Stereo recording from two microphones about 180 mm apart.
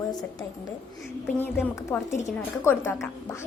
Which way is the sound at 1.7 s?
15° left (ahead or behind).